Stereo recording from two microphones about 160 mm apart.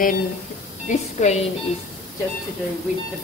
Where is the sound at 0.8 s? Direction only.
45° left (ahead or behind).